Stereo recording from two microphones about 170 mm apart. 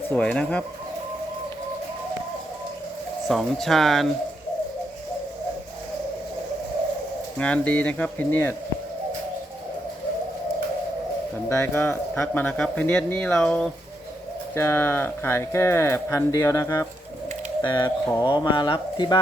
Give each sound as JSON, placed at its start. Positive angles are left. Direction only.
{"t": 0.1, "sound": "speech", "side_deg": 5}
{"t": 3.2, "sound": "speech", "side_deg": 0}
{"t": 7.3, "sound": "speech", "side_deg": 5}
{"t": 11.4, "sound": "speech", "side_deg": 15}